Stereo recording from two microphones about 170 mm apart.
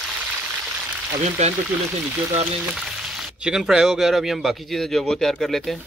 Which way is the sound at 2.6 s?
5° right (ahead or behind).